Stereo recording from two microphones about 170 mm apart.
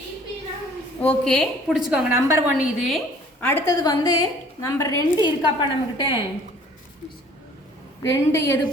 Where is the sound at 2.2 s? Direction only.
15° right (ahead or behind).